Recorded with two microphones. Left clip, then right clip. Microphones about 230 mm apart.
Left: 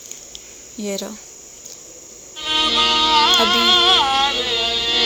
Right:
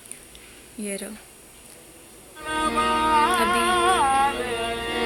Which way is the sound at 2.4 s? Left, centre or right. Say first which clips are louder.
Left 7 dB; centre.